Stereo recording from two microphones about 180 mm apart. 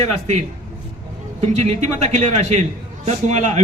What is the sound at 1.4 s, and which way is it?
A man's voice, 35° right (ahead or behind).